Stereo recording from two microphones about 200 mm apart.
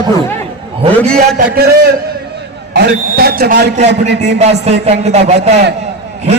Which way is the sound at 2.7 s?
50° right (ahead or behind).